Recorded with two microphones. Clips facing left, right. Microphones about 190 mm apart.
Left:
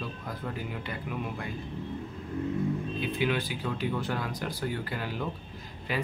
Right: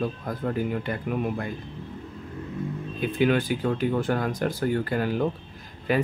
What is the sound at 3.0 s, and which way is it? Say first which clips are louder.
Speech: right 10 dB; 50° right (ahead or behind).